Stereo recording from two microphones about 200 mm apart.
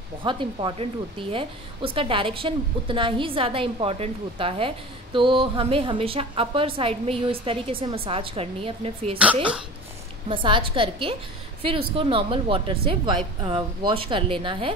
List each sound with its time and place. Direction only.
0.2 s a woman's voice: 25° right (ahead or behind)
10.2 s a woman's voice: 25° right (ahead or behind)